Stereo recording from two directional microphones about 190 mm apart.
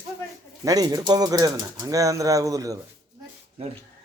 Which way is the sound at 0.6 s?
20° right (ahead or behind).